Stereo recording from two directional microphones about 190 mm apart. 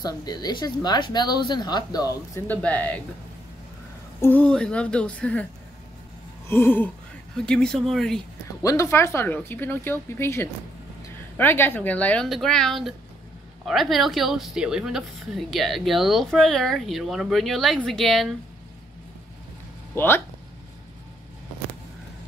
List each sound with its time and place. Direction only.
0.0 s speech: 20° left (ahead or behind)
4.2 s a woman's voice: 10° left (ahead or behind)
6.5 s a woman's voice: 10° left (ahead or behind)
8.6 s a woman's voice: 15° left (ahead or behind)
19.9 s speech: 10° left (ahead or behind)